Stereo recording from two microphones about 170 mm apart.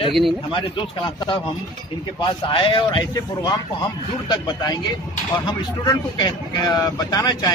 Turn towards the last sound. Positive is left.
turn(degrees=20)  # may be behind; listen again after turning